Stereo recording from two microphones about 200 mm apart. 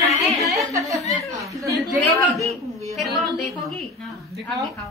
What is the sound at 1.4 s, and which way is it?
Speech, 15° right (ahead or behind).